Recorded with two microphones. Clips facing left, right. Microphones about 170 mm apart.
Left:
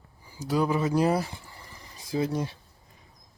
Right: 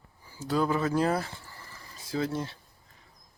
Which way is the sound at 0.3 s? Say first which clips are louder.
Left 1 dB; 15° left (ahead or behind).